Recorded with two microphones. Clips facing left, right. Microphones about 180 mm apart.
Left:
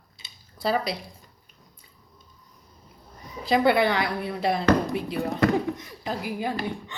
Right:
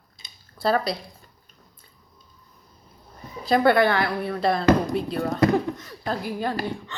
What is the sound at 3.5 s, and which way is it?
A man's voice, 15° left (ahead or behind).